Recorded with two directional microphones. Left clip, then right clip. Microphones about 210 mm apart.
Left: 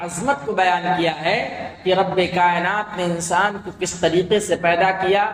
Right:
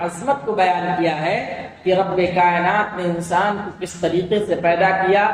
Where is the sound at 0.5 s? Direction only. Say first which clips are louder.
Left 1 dB; 20° left (ahead or behind).